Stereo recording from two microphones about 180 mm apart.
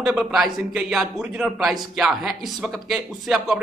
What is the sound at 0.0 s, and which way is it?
A man's voice, centre (ahead or behind).